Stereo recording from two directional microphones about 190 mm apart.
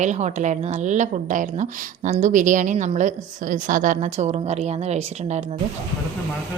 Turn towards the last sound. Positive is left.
turn(degrees=-35)  # may be behind; listen again after turning